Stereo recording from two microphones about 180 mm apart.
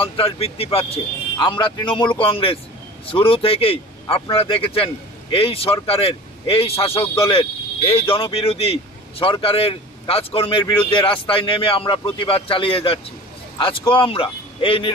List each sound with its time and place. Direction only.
0.0 s a man's voice: 30° left (ahead or behind)